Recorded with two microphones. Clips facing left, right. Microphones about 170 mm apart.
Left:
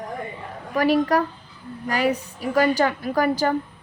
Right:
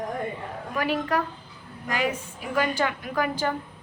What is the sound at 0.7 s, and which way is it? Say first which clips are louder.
A woman's voice: left 7 dB; 40° left (ahead or behind).